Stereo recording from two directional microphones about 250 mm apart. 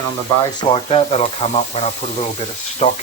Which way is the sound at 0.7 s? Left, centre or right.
Left.